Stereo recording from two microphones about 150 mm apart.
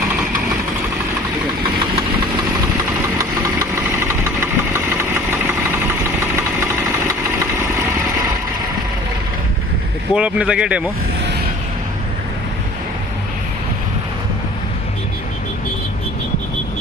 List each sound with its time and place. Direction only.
4.1 s engine: 15° right (ahead or behind)
10.2 s speech: 10° right (ahead or behind)